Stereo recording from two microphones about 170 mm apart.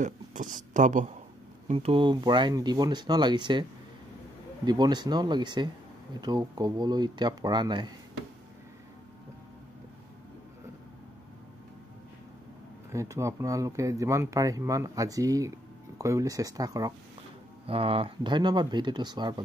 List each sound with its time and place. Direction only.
0.0 s speech: 50° right (ahead or behind)
1.7 s speech: 35° right (ahead or behind)
4.6 s speech: 25° right (ahead or behind)
12.9 s speech: 15° right (ahead or behind)
17.6 s speech: 35° right (ahead or behind)